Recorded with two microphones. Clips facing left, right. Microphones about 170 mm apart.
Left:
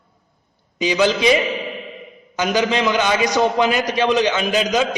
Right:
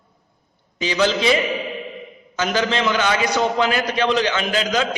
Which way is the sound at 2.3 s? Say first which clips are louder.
Left 2 dB; 15° left (ahead or behind).